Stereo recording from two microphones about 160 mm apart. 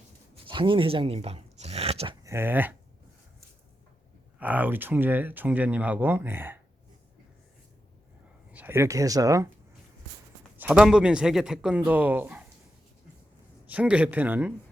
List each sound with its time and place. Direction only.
0.4 s a sound: 30° right (ahead or behind)
2.2 s speech: 15° right (ahead or behind)
4.4 s speech: 10° right (ahead or behind)
8.5 s speech: 15° right (ahead or behind)
10.6 s speech: 5° right (ahead or behind)
13.7 s speech: 10° right (ahead or behind)